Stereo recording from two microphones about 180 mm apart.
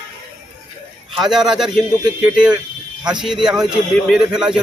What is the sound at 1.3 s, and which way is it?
Speech, 5° right (ahead or behind).